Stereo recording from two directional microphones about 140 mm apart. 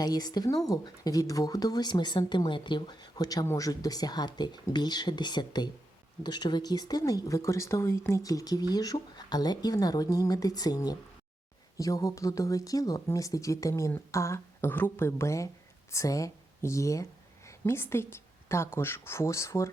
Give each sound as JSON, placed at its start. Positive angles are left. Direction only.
{"t": 0.0, "sound": "speech", "side_deg": 30}